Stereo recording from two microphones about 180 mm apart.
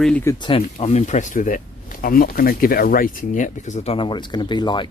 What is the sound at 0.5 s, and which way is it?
Speech, 35° left (ahead or behind).